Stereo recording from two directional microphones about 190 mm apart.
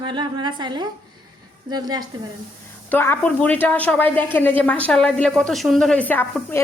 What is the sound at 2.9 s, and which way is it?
A woman's voice, 10° left (ahead or behind).